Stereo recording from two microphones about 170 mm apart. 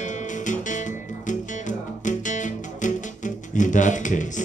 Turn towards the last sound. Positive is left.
turn(degrees=45)  # may be behind; listen again after turning